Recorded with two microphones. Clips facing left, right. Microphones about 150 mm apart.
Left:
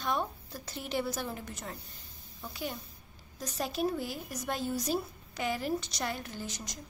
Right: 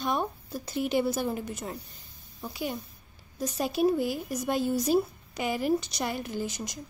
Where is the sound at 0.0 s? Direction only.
15° right (ahead or behind).